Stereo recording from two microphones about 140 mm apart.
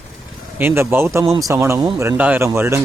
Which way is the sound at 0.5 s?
15° right (ahead or behind).